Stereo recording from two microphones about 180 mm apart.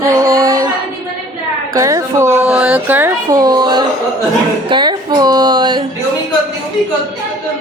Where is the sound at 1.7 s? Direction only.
20° right (ahead or behind).